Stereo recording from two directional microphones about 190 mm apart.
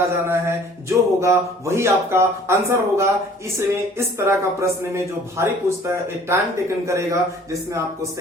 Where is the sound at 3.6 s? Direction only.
15° right (ahead or behind).